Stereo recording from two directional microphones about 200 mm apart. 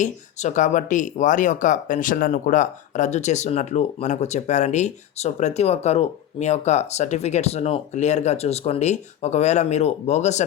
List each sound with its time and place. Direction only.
0.0 s speech: 35° left (ahead or behind)